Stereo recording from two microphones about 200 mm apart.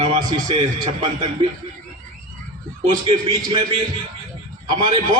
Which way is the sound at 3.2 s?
25° right (ahead or behind).